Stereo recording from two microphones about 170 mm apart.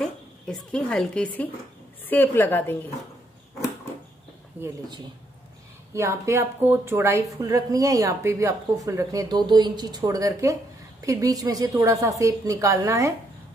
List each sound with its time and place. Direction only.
0.0 s a woman's voice: 5° left (ahead or behind)
4.6 s speech: 10° right (ahead or behind)
5.9 s a woman's voice: 15° right (ahead or behind)